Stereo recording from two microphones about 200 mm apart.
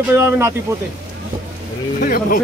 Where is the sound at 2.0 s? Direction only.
45° left (ahead or behind).